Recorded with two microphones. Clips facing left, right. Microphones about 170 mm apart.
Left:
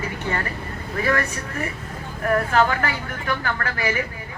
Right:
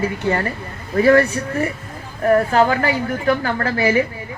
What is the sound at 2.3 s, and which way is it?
Speech, 35° right (ahead or behind).